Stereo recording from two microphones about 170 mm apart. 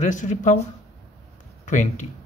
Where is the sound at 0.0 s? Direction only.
45° left (ahead or behind).